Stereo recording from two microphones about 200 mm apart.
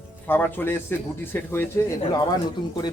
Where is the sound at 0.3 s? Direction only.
10° left (ahead or behind).